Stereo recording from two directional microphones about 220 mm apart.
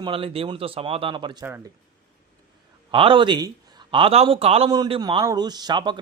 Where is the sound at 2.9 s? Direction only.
25° right (ahead or behind).